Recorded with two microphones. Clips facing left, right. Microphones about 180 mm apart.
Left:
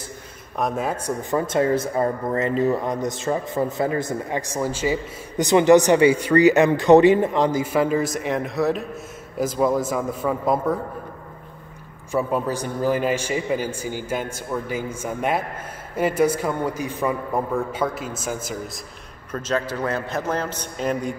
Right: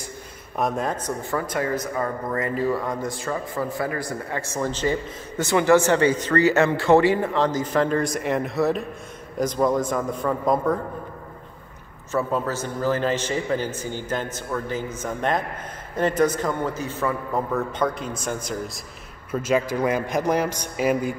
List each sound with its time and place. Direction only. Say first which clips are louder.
0.6 s a man's voice: even; centre (ahead or behind)
1.3 s a man's voice: left 6 dB; 25° left (ahead or behind); by 10.8 s 5° left (ahead or behind)
12.1 s speech: left 2 dB; 15° left (ahead or behind)
19.3 s a man's voice: right 3 dB; 10° right (ahead or behind)